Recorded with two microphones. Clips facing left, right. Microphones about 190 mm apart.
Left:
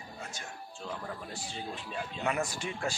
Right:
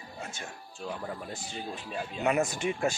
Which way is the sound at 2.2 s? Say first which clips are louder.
Right 6 dB; 20° right (ahead or behind).